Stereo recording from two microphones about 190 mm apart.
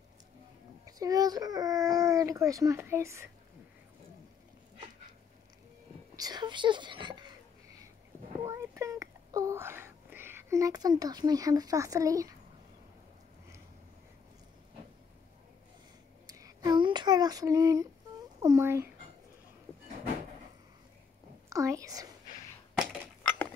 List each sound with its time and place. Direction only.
0.8 s a child's voice: 20° right (ahead or behind)
6.1 s speech: 20° right (ahead or behind)
8.5 s a sound: 15° right (ahead or behind)
16.3 s a sound: 20° right (ahead or behind)
18.4 s speech: 15° right (ahead or behind)
21.5 s a woman's voice: 15° right (ahead or behind)
22.8 s chink: 5° left (ahead or behind)